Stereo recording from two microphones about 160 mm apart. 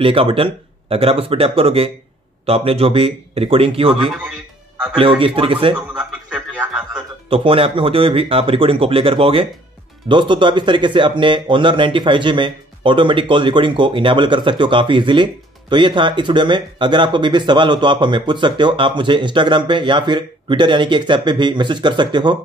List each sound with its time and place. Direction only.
0.0 s speech: 35° right (ahead or behind)
5.2 s speech: 35° right (ahead or behind)
5.8 s a sound: 5° right (ahead or behind)
7.2 s speech: 35° right (ahead or behind)